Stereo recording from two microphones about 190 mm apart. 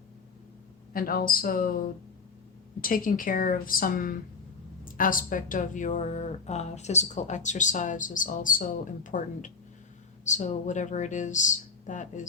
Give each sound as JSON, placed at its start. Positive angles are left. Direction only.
{"t": 0.9, "sound": "a woman's voice", "side_deg": 50}
{"t": 2.8, "sound": "a woman's voice", "side_deg": 45}